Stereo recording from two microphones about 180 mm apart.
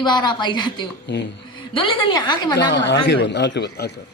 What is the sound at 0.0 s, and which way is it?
Speech, 25° left (ahead or behind).